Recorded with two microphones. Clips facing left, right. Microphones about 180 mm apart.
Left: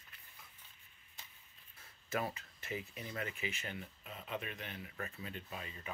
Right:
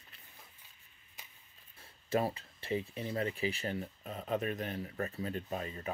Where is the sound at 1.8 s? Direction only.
30° right (ahead or behind).